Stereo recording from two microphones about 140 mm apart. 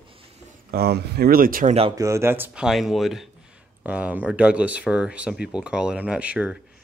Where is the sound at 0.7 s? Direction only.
90° right.